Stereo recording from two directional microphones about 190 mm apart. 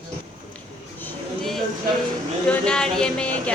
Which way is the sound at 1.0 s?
Centre (ahead or behind).